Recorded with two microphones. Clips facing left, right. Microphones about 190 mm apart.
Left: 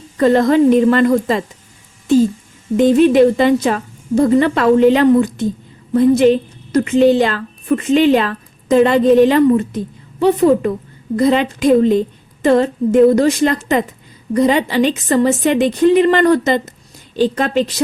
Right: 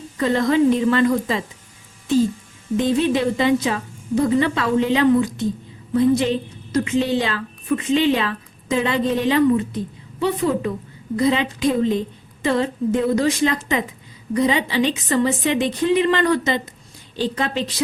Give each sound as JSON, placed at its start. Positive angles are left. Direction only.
{"t": 0.2, "sound": "a woman's voice", "side_deg": 50}
{"t": 2.7, "sound": "a woman's voice", "side_deg": 55}